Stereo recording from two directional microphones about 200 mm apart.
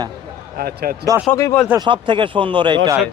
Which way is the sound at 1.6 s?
20° right (ahead or behind).